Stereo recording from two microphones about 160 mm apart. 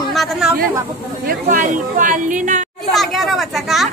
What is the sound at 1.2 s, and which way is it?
A woman's voice, 55° right (ahead or behind).